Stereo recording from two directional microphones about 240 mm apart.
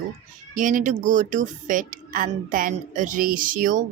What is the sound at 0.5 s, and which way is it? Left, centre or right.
A woman's voice, right.